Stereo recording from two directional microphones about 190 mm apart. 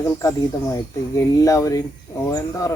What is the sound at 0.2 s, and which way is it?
Speech, 15° left (ahead or behind).